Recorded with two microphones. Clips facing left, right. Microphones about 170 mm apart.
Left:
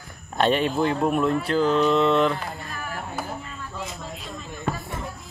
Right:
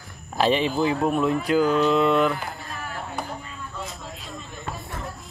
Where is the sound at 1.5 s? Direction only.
5° right (ahead or behind).